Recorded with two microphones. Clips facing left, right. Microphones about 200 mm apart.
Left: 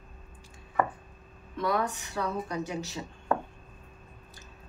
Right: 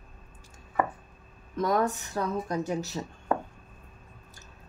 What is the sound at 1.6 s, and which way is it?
A woman's voice, 40° right (ahead or behind).